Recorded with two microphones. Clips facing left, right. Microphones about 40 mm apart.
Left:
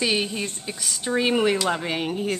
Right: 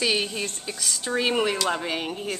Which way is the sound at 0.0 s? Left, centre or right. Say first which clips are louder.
Left 1 dB; centre.